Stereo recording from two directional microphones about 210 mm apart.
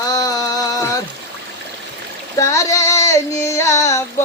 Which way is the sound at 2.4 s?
15° left (ahead or behind).